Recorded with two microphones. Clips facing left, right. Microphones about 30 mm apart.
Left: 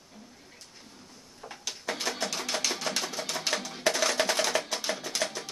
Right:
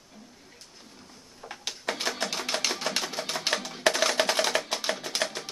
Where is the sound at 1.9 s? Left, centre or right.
Right.